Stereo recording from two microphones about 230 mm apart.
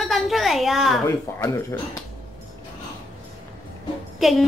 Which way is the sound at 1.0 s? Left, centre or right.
Centre.